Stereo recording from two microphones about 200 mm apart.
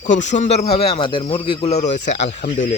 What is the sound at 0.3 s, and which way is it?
Speech, 35° left (ahead or behind).